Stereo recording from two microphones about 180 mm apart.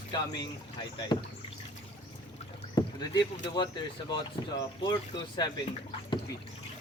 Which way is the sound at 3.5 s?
25° left (ahead or behind).